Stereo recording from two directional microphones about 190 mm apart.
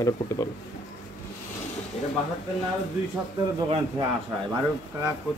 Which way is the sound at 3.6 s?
20° right (ahead or behind).